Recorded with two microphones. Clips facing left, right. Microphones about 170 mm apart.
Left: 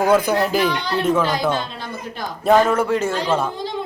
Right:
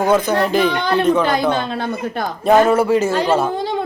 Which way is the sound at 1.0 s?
5° left (ahead or behind).